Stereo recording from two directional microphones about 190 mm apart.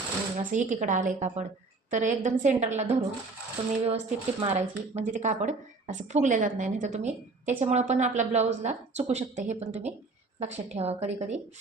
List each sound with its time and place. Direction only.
0.3 s speech: 40° right (ahead or behind)